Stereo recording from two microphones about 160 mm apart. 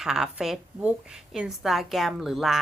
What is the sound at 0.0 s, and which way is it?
A woman's voice, 5° right (ahead or behind).